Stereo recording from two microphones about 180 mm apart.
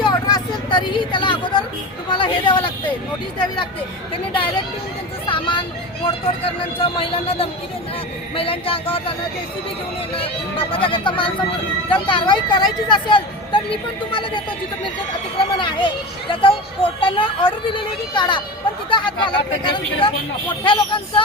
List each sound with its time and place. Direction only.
0.0 s a sound: 20° left (ahead or behind)
3.3 s speech: 25° left (ahead or behind)
5.3 s vehicle: 25° left (ahead or behind)
6.7 s speech: 30° left (ahead or behind)
10.2 s speech: 30° left (ahead or behind)
15.5 s speech: 25° left (ahead or behind)